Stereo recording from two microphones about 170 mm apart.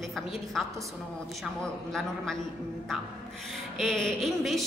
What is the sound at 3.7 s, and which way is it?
Speech, 5° left (ahead or behind).